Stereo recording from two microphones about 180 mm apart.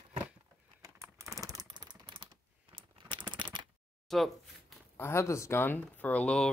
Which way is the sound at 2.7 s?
25° right (ahead or behind).